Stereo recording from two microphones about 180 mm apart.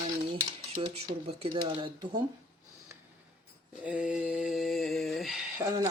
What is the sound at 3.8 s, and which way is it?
Mantra, 5° right (ahead or behind).